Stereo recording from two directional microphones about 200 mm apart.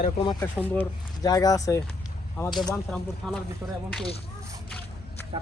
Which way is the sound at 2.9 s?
Centre (ahead or behind).